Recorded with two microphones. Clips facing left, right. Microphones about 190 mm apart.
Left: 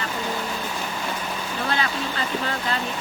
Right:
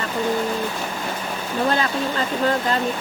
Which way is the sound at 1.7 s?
40° right (ahead or behind).